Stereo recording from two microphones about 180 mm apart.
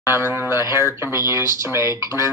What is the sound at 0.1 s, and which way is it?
A woman's voice, 15° right (ahead or behind).